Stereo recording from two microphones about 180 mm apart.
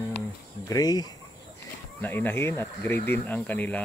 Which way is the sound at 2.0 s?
10° left (ahead or behind).